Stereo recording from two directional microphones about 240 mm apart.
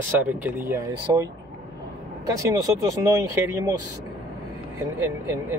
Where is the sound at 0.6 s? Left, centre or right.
Centre.